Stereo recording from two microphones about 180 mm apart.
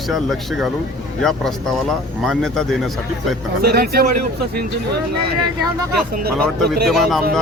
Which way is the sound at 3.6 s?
60° right (ahead or behind).